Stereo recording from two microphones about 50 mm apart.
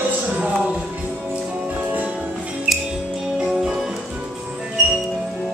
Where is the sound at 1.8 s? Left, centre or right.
Right.